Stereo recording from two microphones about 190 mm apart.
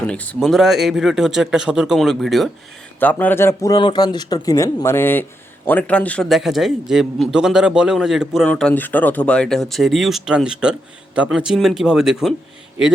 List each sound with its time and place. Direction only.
0.1 s speech: 5° left (ahead or behind)